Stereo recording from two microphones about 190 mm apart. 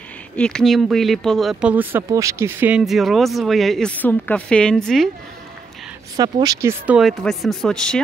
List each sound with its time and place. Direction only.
0.4 s speech: 5° left (ahead or behind)
6.1 s speech: 20° right (ahead or behind)
7.0 s speech: centre (ahead or behind)